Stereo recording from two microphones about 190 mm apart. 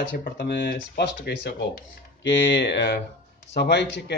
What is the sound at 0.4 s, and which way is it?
Speech, 65° left (ahead or behind).